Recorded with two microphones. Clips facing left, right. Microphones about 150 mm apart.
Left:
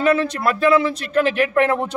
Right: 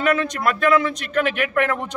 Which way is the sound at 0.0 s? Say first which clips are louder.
Left 2 dB; 30° left (ahead or behind).